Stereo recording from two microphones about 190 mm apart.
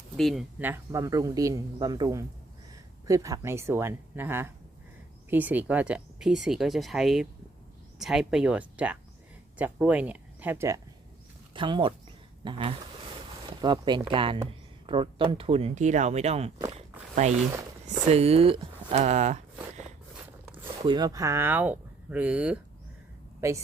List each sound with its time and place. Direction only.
0.2 s speech: centre (ahead or behind)
0.6 s a man's voice: 15° right (ahead or behind)
11.5 s speech: 25° right (ahead or behind)
16.7 s walk: 35° right (ahead or behind)
18.0 s speech: 35° right (ahead or behind)
20.5 s speech: 25° right (ahead or behind); by 22.6 s 5° right (ahead or behind)